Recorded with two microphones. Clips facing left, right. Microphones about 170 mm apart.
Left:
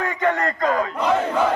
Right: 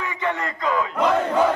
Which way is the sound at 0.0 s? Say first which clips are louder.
Left 5 dB; 45° left (ahead or behind).